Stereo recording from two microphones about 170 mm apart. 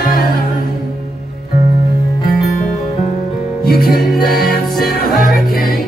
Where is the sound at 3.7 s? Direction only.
60° left (ahead or behind).